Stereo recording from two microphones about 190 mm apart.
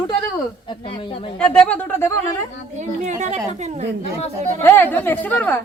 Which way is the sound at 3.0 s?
35° right (ahead or behind).